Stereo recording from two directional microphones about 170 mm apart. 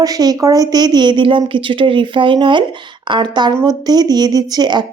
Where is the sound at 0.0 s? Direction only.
20° right (ahead or behind).